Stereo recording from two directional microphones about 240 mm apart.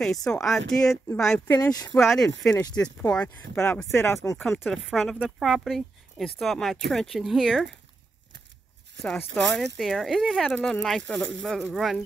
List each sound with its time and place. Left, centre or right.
0.0 s speech: centre
1.6 s speech: centre
2.0 s speech: centre
4.5 s speech: centre
9.0 s speech: centre